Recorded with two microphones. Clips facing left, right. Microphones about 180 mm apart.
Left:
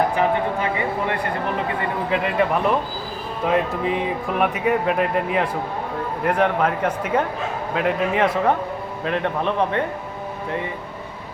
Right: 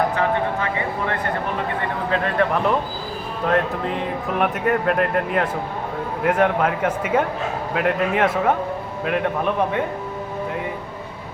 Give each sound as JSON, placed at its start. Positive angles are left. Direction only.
{"t": 0.2, "sound": "a man's voice", "side_deg": 15}